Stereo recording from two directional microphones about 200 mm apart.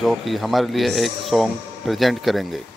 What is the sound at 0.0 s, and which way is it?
Speech, centre (ahead or behind).